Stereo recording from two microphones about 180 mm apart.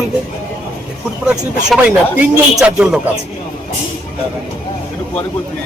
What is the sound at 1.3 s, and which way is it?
Speech, 5° right (ahead or behind).